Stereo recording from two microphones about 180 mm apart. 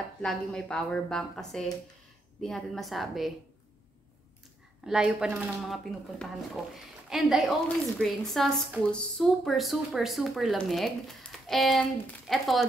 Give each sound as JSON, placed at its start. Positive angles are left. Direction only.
{"t": 0.2, "sound": "speech", "side_deg": 0}
{"t": 4.8, "sound": "speech", "side_deg": -5}